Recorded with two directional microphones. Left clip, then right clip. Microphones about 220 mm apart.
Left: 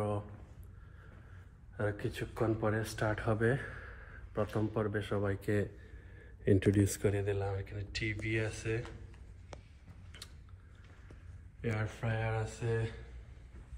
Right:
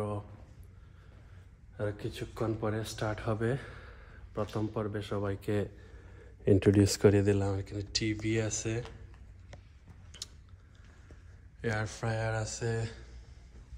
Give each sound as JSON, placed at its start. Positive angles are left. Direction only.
{"t": 1.8, "sound": "speech", "side_deg": 0}
{"t": 6.4, "sound": "speech", "side_deg": -25}
{"t": 6.9, "sound": "speech", "side_deg": -40}
{"t": 7.6, "sound": "speech", "side_deg": -25}
{"t": 10.1, "sound": "a sound", "side_deg": -5}
{"t": 11.6, "sound": "speech", "side_deg": 0}